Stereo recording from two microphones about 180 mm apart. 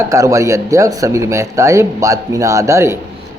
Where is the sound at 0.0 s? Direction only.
15° right (ahead or behind).